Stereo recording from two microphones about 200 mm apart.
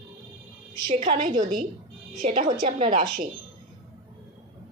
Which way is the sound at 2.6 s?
40° right (ahead or behind).